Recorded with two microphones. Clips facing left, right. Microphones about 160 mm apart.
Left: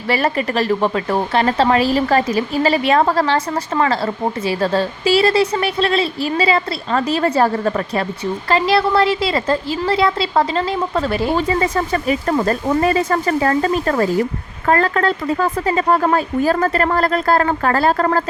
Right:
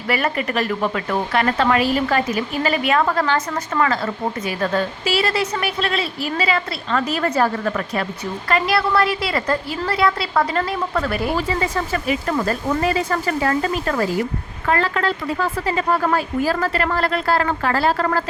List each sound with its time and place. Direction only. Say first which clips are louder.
0.1 s a woman's voice: left 3 dB; 30° left (ahead or behind)
11.7 s speech: left 4 dB; 40° left (ahead or behind)